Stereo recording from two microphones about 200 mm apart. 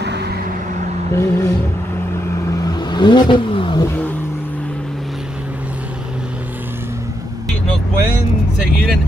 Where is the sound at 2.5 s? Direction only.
20° left (ahead or behind).